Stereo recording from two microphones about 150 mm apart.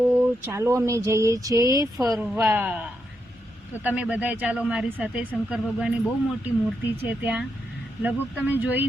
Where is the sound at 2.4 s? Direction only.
15° right (ahead or behind).